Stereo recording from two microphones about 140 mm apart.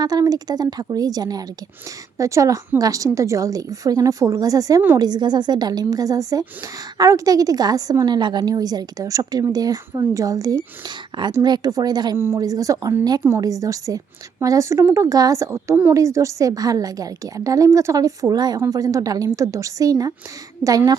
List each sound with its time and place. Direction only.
0.0 s a woman's voice: 25° right (ahead or behind)
12.1 s a woman's voice: 15° right (ahead or behind)